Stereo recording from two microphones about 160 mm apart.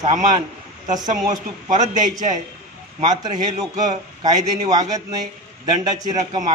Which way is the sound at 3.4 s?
25° right (ahead or behind).